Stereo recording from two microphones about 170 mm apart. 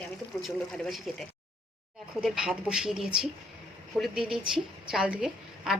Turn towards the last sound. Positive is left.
turn(degrees=-5)  # may be behind; listen again after turning